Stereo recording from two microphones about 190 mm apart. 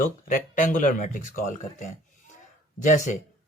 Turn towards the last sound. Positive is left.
turn(degrees=40)  # may be behind; listen again after turning